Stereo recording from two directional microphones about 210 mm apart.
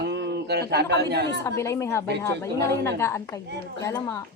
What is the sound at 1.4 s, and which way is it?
Speech, 15° left (ahead or behind).